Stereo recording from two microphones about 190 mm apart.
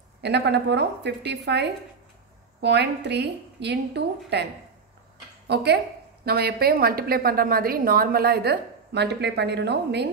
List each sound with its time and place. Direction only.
0.2 s a woman's voice: 65° right (ahead or behind)
5.5 s a woman's voice: 60° right (ahead or behind)